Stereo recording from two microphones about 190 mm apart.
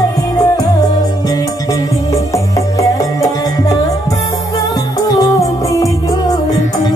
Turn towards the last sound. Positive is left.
turn(degrees=15)  # may be behind; listen again after turning